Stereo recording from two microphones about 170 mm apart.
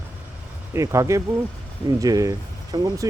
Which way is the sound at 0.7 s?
15° right (ahead or behind).